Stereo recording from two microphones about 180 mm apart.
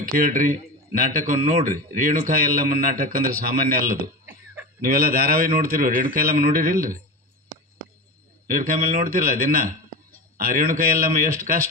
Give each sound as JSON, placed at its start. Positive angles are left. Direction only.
{"t": 0.1, "sound": "a man's voice", "side_deg": -50}
{"t": 8.4, "sound": "a man's voice", "side_deg": -50}